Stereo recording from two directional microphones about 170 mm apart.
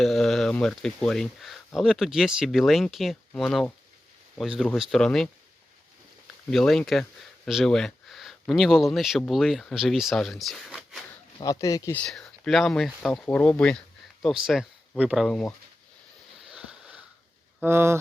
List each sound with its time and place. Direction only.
0.0 s speech: centre (ahead or behind)
6.5 s speech: centre (ahead or behind)
11.3 s speech: 20° left (ahead or behind)
11.9 s speech: 5° left (ahead or behind)
16.5 s sniff: 5° right (ahead or behind)
17.6 s speech: 15° right (ahead or behind)